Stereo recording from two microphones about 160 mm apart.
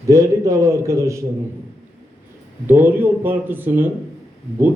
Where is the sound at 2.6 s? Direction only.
15° right (ahead or behind).